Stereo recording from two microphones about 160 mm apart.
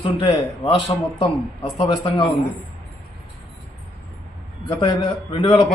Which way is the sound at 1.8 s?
30° left (ahead or behind).